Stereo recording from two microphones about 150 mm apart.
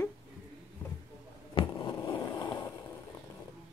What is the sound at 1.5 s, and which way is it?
Skateboard, 30° left (ahead or behind).